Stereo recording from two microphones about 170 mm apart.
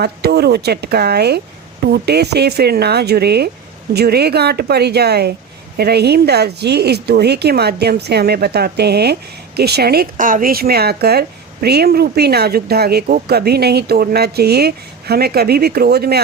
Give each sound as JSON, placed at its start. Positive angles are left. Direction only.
{"t": 0.0, "sound": "speech", "side_deg": -70}